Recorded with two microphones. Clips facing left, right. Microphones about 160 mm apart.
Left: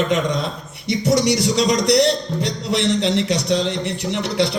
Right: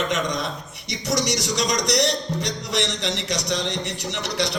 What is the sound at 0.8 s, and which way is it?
A man's voice, 55° left (ahead or behind).